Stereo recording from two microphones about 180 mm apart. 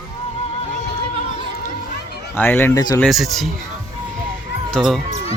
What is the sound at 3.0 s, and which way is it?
Speech, centre (ahead or behind).